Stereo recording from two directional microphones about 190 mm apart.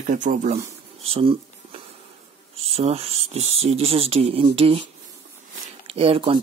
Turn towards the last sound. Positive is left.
turn(degrees=-30)  # may be behind; listen again after turning